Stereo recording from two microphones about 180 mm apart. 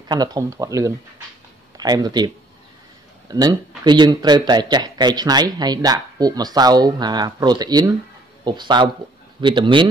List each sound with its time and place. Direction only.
0.1 s speech: 20° right (ahead or behind)